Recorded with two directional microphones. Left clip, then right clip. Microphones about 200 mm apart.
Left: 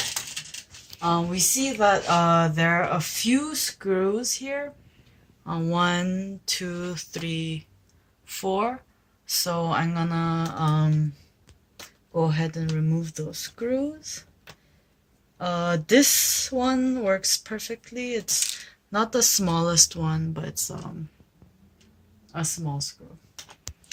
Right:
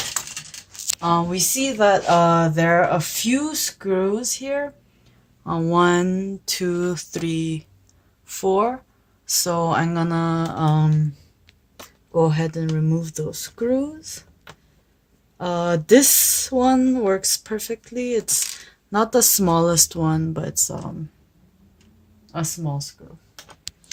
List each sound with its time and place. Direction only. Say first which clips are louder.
1.0 s speech: right 3 dB; 30° right (ahead or behind); by 3.0 s 50° right (ahead or behind)
3.5 s speech: right 3 dB; 35° right (ahead or behind)
5.4 s speech: right 6 dB; 55° right (ahead or behind)
12.1 s speech: right 6 dB; 60° right (ahead or behind)
15.4 s speech: right 4 dB; 60° right (ahead or behind)
22.3 s speech: right 3 dB; 40° right (ahead or behind)